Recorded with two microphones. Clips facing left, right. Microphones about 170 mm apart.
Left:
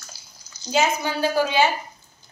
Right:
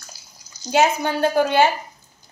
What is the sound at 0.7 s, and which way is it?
Speech, 55° right (ahead or behind).